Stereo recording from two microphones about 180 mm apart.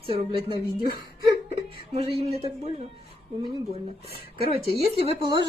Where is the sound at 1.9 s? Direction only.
35° right (ahead or behind).